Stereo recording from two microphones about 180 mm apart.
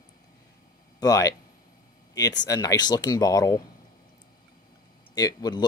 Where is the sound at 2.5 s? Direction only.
20° left (ahead or behind).